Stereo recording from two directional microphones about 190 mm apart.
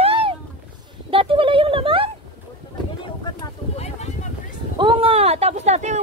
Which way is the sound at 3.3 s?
35° left (ahead or behind).